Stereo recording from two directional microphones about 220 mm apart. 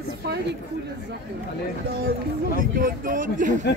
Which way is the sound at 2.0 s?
40° right (ahead or behind).